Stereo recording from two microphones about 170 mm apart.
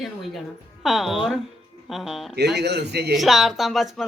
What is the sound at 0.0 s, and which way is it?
A woman's voice, centre (ahead or behind).